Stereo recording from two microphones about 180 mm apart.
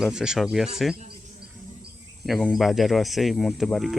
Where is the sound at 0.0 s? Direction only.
5° right (ahead or behind).